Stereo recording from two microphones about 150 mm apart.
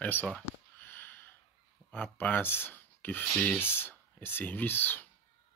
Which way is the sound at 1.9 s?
10° left (ahead or behind).